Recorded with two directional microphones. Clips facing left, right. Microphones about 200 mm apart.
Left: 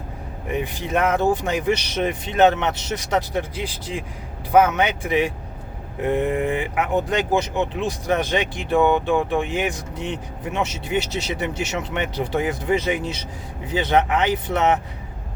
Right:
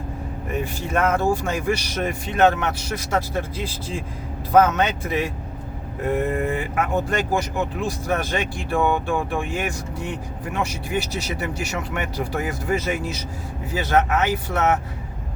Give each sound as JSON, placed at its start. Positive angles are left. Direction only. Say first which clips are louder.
{"t": 0.5, "sound": "speech", "louder": "left 1 dB", "side_deg": 15}